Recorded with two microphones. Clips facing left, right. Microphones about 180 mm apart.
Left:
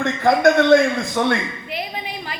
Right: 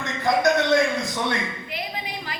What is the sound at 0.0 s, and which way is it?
A man's voice, 50° left (ahead or behind).